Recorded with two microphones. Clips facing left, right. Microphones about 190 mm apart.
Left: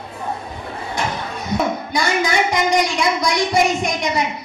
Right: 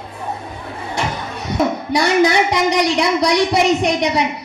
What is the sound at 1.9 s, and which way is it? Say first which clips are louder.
Speech: right 6 dB; 70° right (ahead or behind).